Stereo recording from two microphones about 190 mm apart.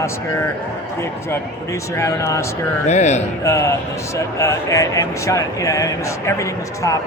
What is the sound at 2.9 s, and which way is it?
Speech, 35° left (ahead or behind).